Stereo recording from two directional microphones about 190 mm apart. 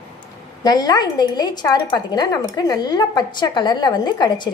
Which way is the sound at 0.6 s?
20° left (ahead or behind).